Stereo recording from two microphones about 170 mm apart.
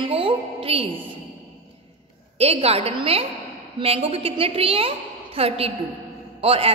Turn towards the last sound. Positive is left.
turn(degrees=-35)  # may be behind; listen again after turning